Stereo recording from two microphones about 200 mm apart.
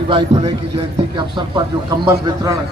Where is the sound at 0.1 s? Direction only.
25° right (ahead or behind).